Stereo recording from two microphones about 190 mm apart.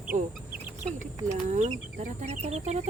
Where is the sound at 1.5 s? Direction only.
40° right (ahead or behind).